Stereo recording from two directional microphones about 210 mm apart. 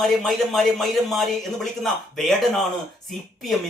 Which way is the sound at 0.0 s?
Centre (ahead or behind).